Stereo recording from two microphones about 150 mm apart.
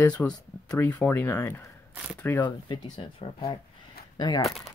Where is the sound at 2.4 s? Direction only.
30° left (ahead or behind).